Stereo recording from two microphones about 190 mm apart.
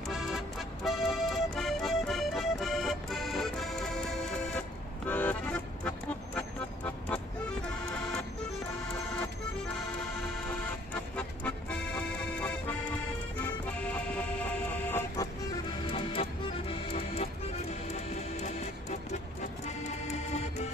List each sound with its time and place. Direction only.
0.1 s music: centre (ahead or behind)
10.9 s music: 5° left (ahead or behind)
12.4 s accordion: 5° left (ahead or behind)
13.7 s music: 5° left (ahead or behind)
15.9 s music: 25° left (ahead or behind)